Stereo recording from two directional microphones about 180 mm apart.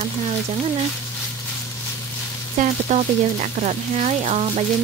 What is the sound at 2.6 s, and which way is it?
Speech, 40° right (ahead or behind).